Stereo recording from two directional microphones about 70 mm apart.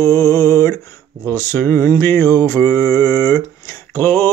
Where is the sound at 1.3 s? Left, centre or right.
Left.